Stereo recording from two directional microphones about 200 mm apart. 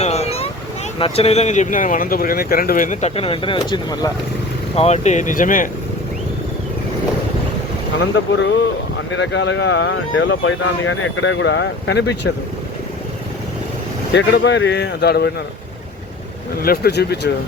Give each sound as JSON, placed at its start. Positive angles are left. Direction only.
{"t": 0.0, "sound": "a sound", "side_deg": 30}
{"t": 0.9, "sound": "speech", "side_deg": 25}
{"t": 4.7, "sound": "speech", "side_deg": 30}
{"t": 7.9, "sound": "speech", "side_deg": 65}
{"t": 14.1, "sound": "speech", "side_deg": 60}
{"t": 16.6, "sound": "speech", "side_deg": 50}